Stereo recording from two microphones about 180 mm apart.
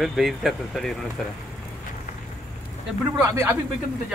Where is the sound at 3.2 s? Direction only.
15° right (ahead or behind).